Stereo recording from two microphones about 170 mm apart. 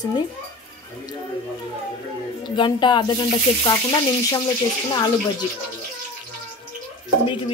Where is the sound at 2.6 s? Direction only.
30° left (ahead or behind).